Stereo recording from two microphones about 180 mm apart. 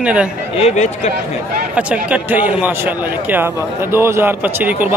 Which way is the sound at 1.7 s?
5° right (ahead or behind).